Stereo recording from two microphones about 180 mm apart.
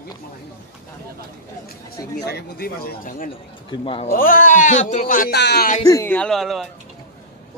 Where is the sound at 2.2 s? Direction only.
60° left (ahead or behind).